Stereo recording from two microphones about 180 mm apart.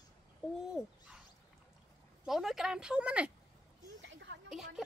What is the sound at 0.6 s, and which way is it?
Dog, 5° right (ahead or behind).